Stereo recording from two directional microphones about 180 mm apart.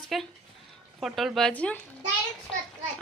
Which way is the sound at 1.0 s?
Centre (ahead or behind).